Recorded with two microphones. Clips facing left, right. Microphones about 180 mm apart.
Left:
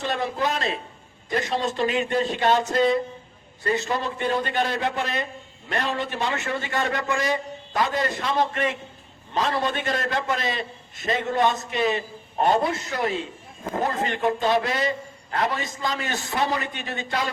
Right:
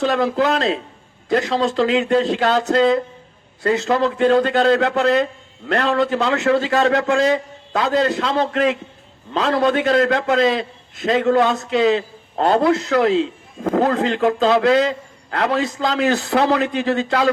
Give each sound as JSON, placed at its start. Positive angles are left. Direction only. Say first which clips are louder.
{"t": 0.0, "sound": "a man's voice", "louder": "right 8 dB", "side_deg": -90}
{"t": 9.3, "sound": "a man's voice", "louder": "right 7 dB", "side_deg": -80}